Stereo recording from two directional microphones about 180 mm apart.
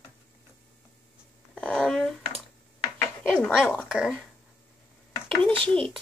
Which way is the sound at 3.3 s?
5° left (ahead or behind).